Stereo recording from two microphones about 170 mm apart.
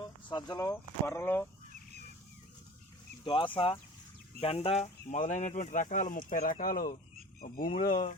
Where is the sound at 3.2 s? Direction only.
30° left (ahead or behind).